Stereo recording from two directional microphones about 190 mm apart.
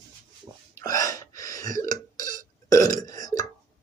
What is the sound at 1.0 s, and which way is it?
Gasp, 15° left (ahead or behind).